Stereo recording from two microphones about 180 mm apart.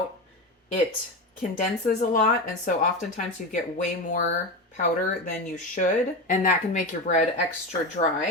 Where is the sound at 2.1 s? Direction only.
45° left (ahead or behind).